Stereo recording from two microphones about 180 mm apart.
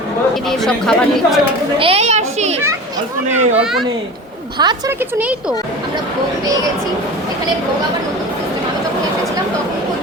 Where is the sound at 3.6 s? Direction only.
Centre (ahead or behind).